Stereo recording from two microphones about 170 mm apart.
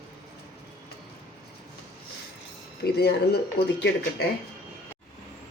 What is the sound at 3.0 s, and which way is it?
Speech, 75° left (ahead or behind).